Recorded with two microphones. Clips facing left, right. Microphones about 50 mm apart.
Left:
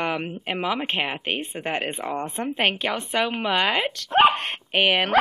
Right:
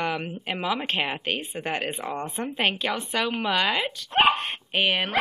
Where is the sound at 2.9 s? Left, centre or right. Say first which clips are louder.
Left 2 dB; left.